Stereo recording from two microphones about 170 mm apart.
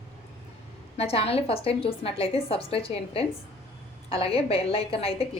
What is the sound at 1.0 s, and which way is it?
A woman's voice, 35° left (ahead or behind).